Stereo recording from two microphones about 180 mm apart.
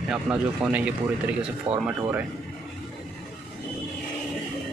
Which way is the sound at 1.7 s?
35° right (ahead or behind).